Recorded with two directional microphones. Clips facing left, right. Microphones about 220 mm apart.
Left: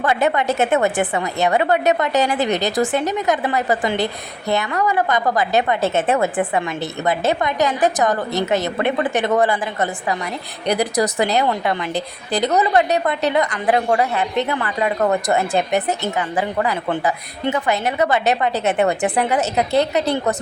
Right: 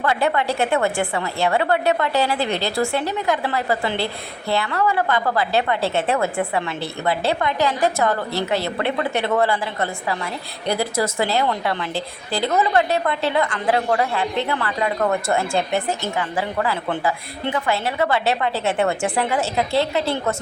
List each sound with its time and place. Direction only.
0.0 s a woman's voice: 20° left (ahead or behind)